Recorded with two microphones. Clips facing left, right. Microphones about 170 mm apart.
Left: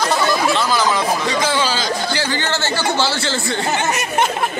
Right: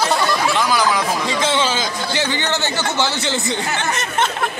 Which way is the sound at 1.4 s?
25° right (ahead or behind).